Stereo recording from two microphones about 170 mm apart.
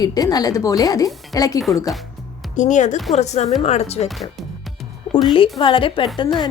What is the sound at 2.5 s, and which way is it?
A woman's voice, 45° left (ahead or behind).